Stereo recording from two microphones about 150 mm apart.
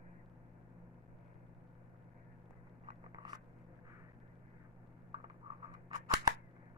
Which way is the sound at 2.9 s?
30° right (ahead or behind).